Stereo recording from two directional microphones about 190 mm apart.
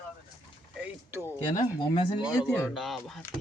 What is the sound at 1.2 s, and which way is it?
Speech, 20° left (ahead or behind).